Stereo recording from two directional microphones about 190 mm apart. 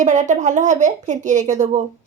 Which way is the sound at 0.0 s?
40° right (ahead or behind).